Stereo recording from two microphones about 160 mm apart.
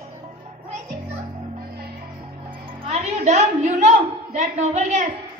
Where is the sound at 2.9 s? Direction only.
50° right (ahead or behind).